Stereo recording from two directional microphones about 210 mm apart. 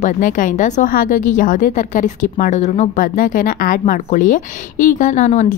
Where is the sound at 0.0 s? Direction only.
40° left (ahead or behind).